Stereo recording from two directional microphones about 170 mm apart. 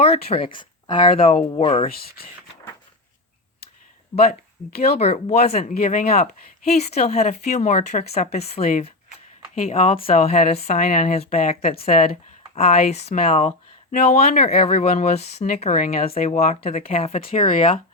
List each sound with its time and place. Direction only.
0.0 s speech: 35° left (ahead or behind)
1.9 s speech: 65° left (ahead or behind)
4.3 s speech: 65° left (ahead or behind)
4.9 s speech: 40° left (ahead or behind)
5.7 s speech: 55° left (ahead or behind); by 10.8 s 40° left (ahead or behind)
10.8 s speech: 50° left (ahead or behind)
12.5 s speech: 35° left (ahead or behind)
15.8 s speech: 60° left (ahead or behind)
16.0 s speech: 40° left (ahead or behind)